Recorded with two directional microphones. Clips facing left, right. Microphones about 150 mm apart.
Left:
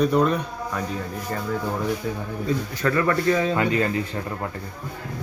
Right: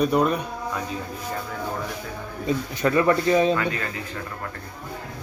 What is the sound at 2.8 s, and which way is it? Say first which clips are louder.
Speech: right 1 dB; 20° right (ahead or behind).